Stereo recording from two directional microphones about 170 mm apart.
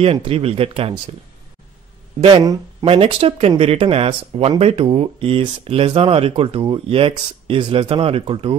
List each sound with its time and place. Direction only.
0.0 s speech: 35° right (ahead or behind)
2.2 s speech: 25° right (ahead or behind)